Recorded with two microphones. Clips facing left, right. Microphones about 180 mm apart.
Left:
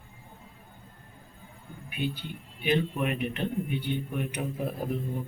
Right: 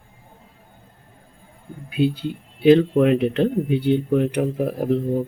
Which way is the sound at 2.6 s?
90° right.